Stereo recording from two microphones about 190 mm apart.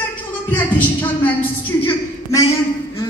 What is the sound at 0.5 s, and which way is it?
A woman's voice, 10° left (ahead or behind).